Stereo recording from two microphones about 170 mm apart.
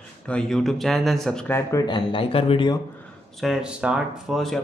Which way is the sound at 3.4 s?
5° right (ahead or behind).